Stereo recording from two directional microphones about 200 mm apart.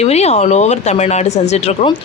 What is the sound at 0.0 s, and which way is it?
Speech, 30° left (ahead or behind).